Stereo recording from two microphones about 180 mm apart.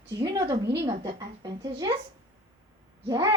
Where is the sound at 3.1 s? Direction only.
20° right (ahead or behind).